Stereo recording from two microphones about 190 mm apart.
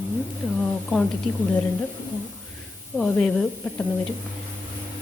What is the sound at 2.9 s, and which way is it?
Speech, 10° left (ahead or behind).